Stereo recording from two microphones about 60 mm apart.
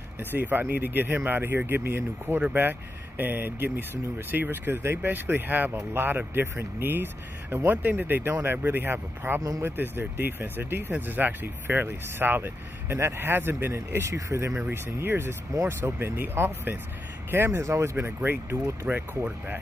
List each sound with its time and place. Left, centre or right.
0.2 s speech: right
14.1 s speech: right
14.6 s speech: right
17.9 s speech: right
18.9 s speech: right